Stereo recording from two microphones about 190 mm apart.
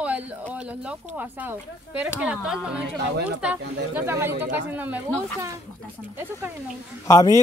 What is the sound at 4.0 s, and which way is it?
Speech, 10° right (ahead or behind).